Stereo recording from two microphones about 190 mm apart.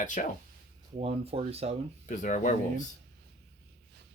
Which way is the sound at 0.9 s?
30° right (ahead or behind).